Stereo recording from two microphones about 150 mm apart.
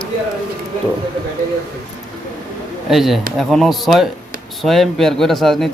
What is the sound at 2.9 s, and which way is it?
Speech, centre (ahead or behind).